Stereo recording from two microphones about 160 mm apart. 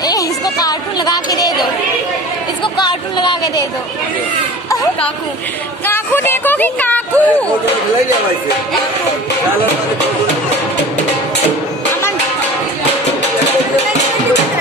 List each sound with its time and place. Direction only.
0.0 s a sound: 25° left (ahead or behind)
2.6 s speech: 30° left (ahead or behind)
5.9 s speech: 15° left (ahead or behind)